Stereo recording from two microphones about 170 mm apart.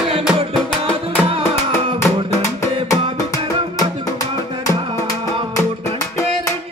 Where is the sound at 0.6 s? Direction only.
5° left (ahead or behind).